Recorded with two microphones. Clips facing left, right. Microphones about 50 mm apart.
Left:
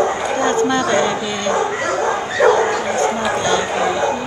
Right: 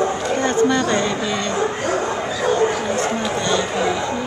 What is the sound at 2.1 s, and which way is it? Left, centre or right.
Bow-wow, left.